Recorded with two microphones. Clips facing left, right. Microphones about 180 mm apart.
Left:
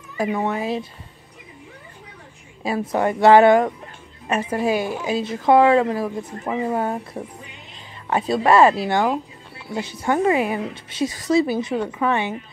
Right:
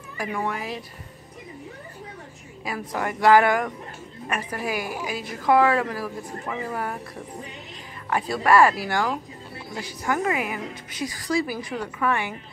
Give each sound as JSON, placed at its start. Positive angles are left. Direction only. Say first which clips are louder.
{"t": 0.2, "sound": "a woman's voice", "louder": "left 6 dB", "side_deg": 25}
{"t": 2.6, "sound": "a woman's voice", "louder": "left 8 dB", "side_deg": 25}
{"t": 8.1, "sound": "a woman's voice", "louder": "left 3 dB", "side_deg": 25}